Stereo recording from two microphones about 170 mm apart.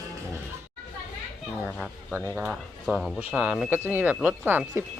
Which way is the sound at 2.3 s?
10° right (ahead or behind).